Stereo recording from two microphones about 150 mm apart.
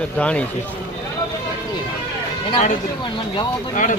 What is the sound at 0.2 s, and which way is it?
Speech, 10° left (ahead or behind).